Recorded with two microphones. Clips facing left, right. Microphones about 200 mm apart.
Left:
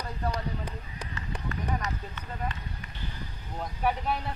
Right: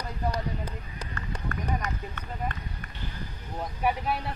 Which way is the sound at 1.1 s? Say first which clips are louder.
Right 1 dB; 55° right (ahead or behind).